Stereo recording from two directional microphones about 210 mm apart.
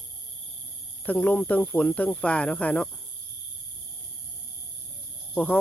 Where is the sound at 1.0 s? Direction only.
5° left (ahead or behind).